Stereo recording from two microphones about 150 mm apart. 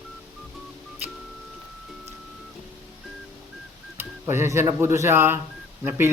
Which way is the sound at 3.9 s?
15° right (ahead or behind).